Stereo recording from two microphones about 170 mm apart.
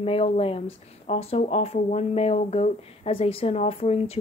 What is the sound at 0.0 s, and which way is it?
Speech, 35° left (ahead or behind).